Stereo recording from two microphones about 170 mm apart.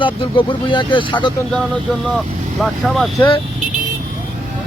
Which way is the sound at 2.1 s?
Centre (ahead or behind).